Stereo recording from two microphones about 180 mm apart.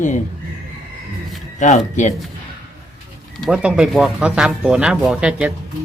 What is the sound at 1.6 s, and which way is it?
Speech, 40° left (ahead or behind).